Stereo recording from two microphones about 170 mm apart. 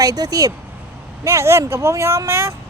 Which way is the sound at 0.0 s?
20° right (ahead or behind).